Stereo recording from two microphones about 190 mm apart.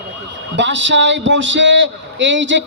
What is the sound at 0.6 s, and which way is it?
A man's voice, 70° right (ahead or behind).